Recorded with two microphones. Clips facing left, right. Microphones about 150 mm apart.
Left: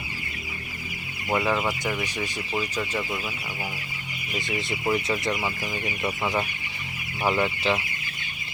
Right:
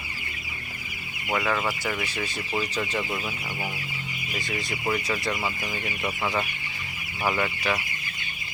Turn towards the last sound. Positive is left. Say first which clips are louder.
# left 3 dB
turn(degrees=20)  # may be behind; listen again after turning